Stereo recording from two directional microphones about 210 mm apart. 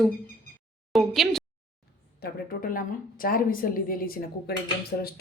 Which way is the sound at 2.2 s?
40° left (ahead or behind).